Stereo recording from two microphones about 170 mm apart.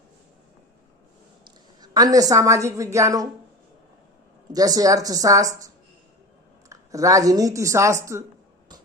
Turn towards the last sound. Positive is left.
turn(degrees=-15)  # may be behind; listen again after turning